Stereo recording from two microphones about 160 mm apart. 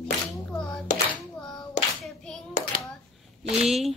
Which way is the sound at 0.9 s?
50° left (ahead or behind).